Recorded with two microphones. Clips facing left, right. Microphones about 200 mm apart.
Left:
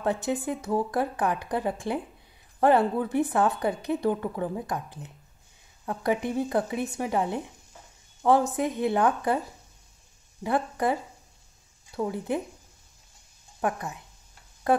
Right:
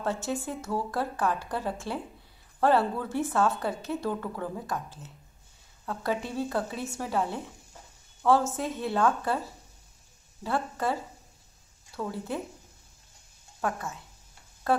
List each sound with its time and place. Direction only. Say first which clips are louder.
0.0 s a woman's voice: left 4 dB; 15° left (ahead or behind)
10.4 s a woman's voice: left 4 dB; 15° left (ahead or behind)
13.6 s a woman's voice: left 3 dB; 15° left (ahead or behind)